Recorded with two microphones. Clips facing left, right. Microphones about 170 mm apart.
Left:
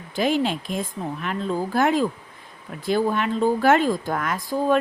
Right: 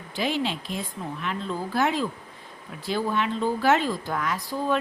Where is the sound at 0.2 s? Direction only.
45° left (ahead or behind).